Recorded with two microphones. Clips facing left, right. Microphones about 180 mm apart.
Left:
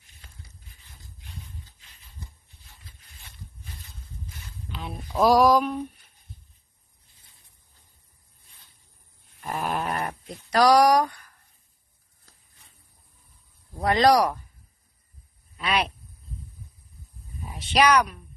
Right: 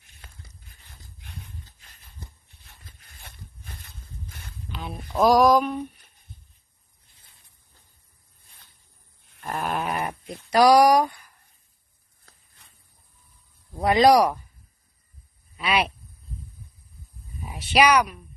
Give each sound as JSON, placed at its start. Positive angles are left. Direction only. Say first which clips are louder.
{"t": 2.8, "sound": "a sound", "louder": "right 4 dB", "side_deg": -50}
{"t": 4.6, "sound": "speech", "louder": "right 1 dB", "side_deg": 0}
{"t": 9.4, "sound": "a sound", "louder": "right 1 dB", "side_deg": 0}
{"t": 13.7, "sound": "speech", "louder": "right 3 dB", "side_deg": -10}
{"t": 15.5, "sound": "speech", "louder": "right 2 dB", "side_deg": -5}
{"t": 17.6, "sound": "speech", "louder": "right 1 dB", "side_deg": -10}